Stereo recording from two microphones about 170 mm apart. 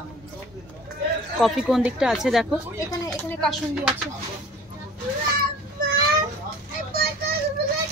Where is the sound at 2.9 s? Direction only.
20° left (ahead or behind).